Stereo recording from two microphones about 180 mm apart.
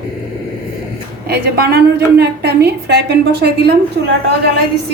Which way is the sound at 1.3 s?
60° right (ahead or behind).